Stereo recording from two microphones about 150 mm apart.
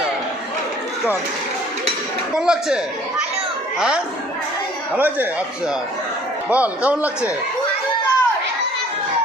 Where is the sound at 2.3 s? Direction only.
5° right (ahead or behind).